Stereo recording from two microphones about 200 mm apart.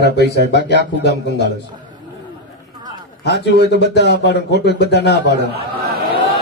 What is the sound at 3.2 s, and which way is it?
A man's voice, 60° left (ahead or behind).